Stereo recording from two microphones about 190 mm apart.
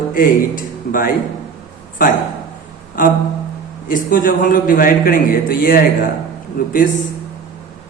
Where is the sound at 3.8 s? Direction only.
45° left (ahead or behind).